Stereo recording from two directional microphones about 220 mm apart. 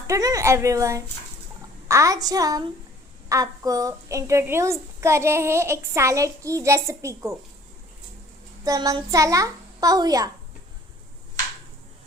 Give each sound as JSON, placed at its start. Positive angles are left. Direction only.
{"t": 0.1, "sound": "a woman's voice", "side_deg": -15}
{"t": 8.6, "sound": "a woman's voice", "side_deg": -15}